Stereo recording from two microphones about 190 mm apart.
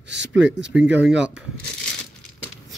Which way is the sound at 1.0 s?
5° right (ahead or behind).